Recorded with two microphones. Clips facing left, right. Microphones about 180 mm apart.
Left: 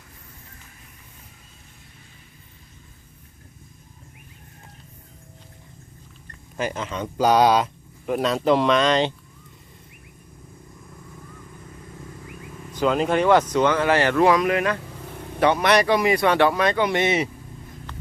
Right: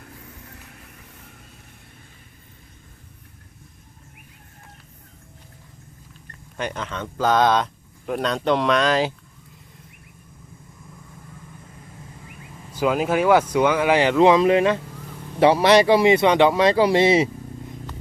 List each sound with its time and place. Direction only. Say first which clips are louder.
6.6 s speech: left 2 dB; 5° left (ahead or behind)
12.7 s speech: even; 5° right (ahead or behind); by 17.2 s 30° right (ahead or behind)